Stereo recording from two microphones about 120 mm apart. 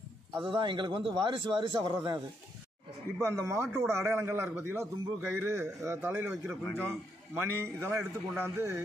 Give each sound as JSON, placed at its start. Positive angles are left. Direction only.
{"t": 0.5, "sound": "a man's voice", "side_deg": -45}
{"t": 3.2, "sound": "a man's voice", "side_deg": -25}